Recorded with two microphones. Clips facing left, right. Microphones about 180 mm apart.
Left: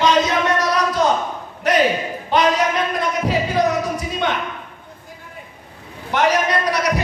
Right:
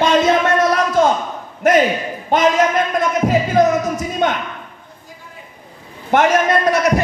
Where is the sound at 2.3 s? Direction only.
45° right (ahead or behind).